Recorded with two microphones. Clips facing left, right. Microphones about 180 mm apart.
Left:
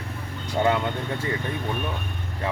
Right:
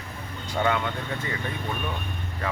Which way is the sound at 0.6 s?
35° left (ahead or behind).